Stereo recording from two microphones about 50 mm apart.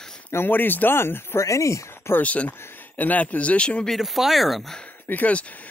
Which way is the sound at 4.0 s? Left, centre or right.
Centre.